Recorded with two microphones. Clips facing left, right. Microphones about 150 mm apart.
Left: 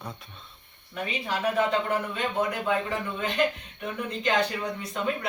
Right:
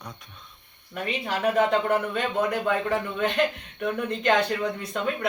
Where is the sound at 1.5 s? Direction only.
60° right (ahead or behind).